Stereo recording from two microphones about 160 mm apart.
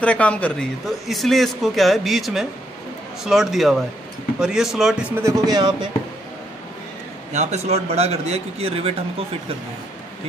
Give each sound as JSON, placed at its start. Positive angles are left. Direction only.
{"t": 0.0, "sound": "speech", "side_deg": 5}
{"t": 5.1, "sound": "speech", "side_deg": -20}
{"t": 7.3, "sound": "speech", "side_deg": -45}